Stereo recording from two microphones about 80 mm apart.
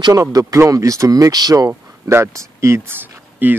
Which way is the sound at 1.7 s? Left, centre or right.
Right.